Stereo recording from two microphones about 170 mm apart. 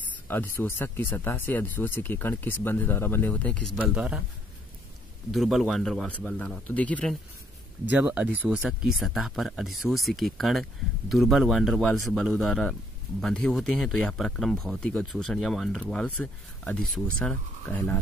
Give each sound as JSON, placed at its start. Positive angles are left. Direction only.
{"t": 0.3, "sound": "speech", "side_deg": 10}
{"t": 3.9, "sound": "speech", "side_deg": -5}
{"t": 5.3, "sound": "speech", "side_deg": 0}
{"t": 7.9, "sound": "speech", "side_deg": -10}